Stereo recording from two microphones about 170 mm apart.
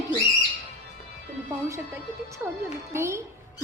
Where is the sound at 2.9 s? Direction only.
15° right (ahead or behind).